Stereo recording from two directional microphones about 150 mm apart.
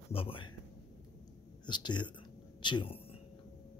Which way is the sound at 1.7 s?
30° left (ahead or behind).